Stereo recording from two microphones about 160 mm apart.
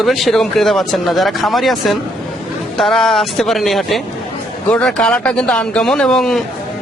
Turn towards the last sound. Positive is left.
turn(degrees=5)  # may be behind; listen again after turning